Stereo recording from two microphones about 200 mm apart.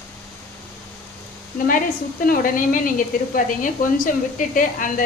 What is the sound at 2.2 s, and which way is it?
A woman's voice, 45° left (ahead or behind).